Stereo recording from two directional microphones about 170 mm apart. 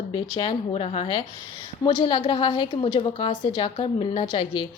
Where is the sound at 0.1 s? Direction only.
30° left (ahead or behind).